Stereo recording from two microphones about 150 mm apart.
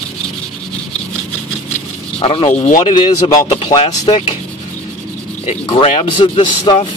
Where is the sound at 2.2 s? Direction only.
40° left (ahead or behind).